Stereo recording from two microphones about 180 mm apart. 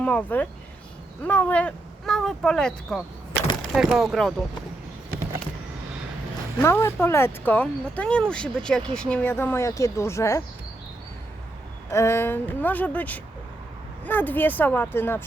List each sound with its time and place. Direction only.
0.0 s speech: 10° left (ahead or behind)
6.6 s speech: 15° left (ahead or behind)
11.9 s speech: 15° left (ahead or behind)